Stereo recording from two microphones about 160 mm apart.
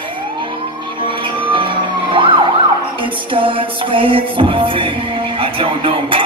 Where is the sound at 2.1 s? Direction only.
30° right (ahead or behind).